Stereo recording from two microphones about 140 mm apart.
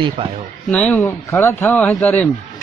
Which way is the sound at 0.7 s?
10° left (ahead or behind).